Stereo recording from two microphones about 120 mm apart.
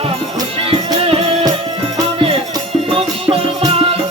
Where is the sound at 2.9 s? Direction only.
50° right (ahead or behind).